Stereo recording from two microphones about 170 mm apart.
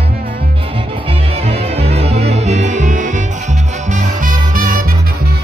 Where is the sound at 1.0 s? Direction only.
35° right (ahead or behind).